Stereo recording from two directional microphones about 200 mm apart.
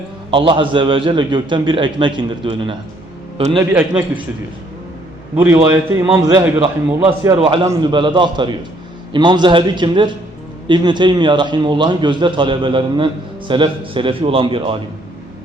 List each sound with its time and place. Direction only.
0.3 s a man's voice: 25° right (ahead or behind)
3.6 s a man's voice: 10° right (ahead or behind)
5.4 s a man's voice: 10° right (ahead or behind)
7.3 s a man's voice: 25° right (ahead or behind)